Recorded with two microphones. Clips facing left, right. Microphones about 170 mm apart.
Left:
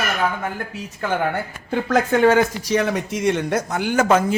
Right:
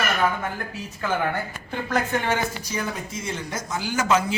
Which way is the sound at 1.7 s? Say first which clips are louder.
Left 7 dB; 80° left.